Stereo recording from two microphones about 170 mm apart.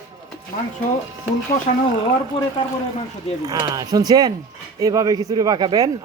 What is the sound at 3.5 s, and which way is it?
A man's voice, 20° right (ahead or behind).